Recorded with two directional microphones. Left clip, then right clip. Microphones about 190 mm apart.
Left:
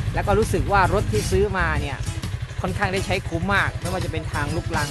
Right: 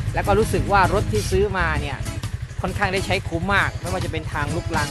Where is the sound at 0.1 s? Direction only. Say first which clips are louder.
Right 2 dB; 10° right (ahead or behind).